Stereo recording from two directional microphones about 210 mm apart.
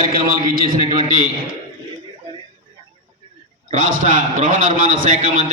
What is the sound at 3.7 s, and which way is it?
A man's voice, 40° right (ahead or behind).